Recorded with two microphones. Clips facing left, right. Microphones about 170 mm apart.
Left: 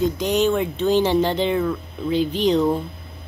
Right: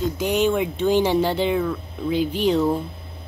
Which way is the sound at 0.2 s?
10° right (ahead or behind).